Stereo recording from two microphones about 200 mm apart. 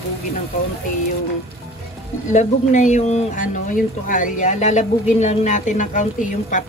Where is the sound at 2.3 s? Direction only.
35° left (ahead or behind).